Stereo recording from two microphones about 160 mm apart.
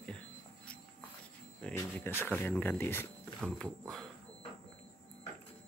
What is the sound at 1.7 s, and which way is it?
Speech, 15° left (ahead or behind).